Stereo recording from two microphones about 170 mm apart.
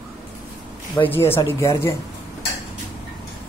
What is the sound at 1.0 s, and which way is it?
Speech, 15° left (ahead or behind).